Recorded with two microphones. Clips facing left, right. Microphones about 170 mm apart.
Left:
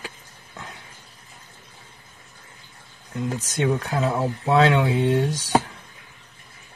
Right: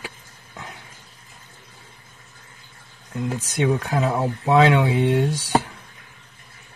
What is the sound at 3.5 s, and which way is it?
Speech, 15° right (ahead or behind).